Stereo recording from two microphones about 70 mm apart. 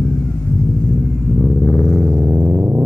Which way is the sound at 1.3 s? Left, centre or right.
Left.